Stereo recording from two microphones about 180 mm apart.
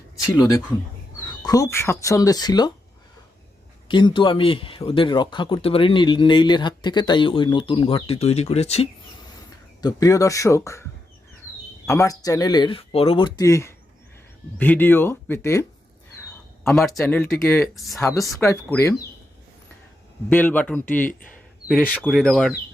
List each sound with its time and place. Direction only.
1.2 s speech: 20° left (ahead or behind)
3.8 s speech: 25° left (ahead or behind)
9.8 s speech: 20° left (ahead or behind)
11.9 s speech: 20° left (ahead or behind)
16.7 s speech: centre (ahead or behind)
17.4 s speech: 15° left (ahead or behind)
17.7 s speech: centre (ahead or behind)
18.3 s speech: 15° left (ahead or behind)
20.3 s speech: 10° left (ahead or behind)
21.0 s speech: 50° left (ahead or behind)
21.7 s speech: 5° left (ahead or behind)